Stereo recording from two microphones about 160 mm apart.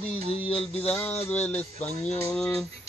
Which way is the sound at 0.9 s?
10° left (ahead or behind).